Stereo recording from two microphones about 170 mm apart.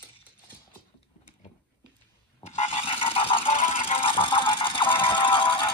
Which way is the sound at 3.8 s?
35° left (ahead or behind).